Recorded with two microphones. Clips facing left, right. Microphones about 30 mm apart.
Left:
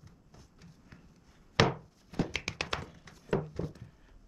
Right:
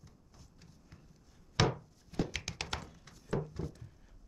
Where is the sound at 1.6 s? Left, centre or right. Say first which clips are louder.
Left 4 dB; left.